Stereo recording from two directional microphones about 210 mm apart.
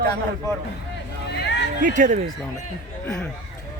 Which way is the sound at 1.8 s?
35° right (ahead or behind).